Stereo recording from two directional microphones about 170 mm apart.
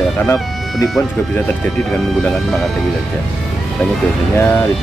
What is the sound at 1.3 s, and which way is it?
Speech, 5° left (ahead or behind).